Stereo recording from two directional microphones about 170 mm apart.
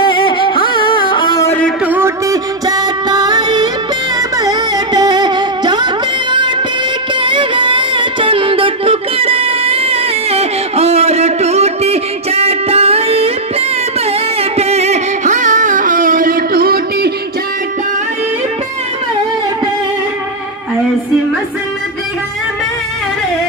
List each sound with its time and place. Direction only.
0.0 s music: 30° left (ahead or behind)
1.9 s music: 15° right (ahead or behind)
4.4 s carnatic music: 20° right (ahead or behind)
7.2 s music: 30° right (ahead or behind); by 17.1 s 60° right (ahead or behind)